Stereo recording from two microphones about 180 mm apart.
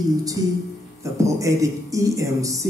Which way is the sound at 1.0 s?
15° right (ahead or behind).